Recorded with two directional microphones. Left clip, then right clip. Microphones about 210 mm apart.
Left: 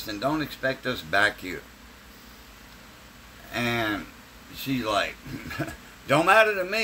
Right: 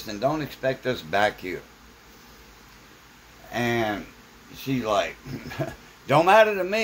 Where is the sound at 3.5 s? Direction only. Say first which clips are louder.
Right 1 dB; 10° right (ahead or behind).